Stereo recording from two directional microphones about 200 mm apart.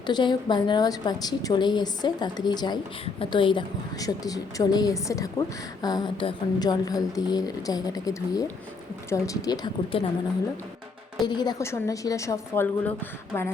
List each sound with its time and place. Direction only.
0.0 s a woman's voice: 20° left (ahead or behind)
11.2 s a woman's voice: 20° left (ahead or behind)